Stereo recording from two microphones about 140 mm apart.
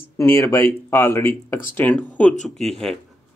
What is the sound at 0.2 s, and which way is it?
Speech, 20° left (ahead or behind).